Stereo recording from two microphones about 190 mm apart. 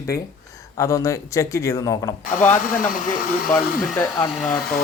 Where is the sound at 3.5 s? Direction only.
5° left (ahead or behind).